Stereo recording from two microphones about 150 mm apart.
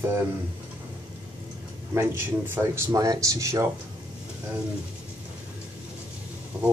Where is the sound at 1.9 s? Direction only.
15° right (ahead or behind).